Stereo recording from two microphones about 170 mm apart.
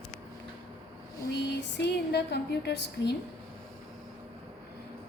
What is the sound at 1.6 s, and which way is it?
A woman's voice, 80° left.